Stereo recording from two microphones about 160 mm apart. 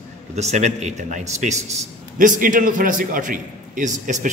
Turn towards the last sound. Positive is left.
turn(degrees=-55)  # may be behind; listen again after turning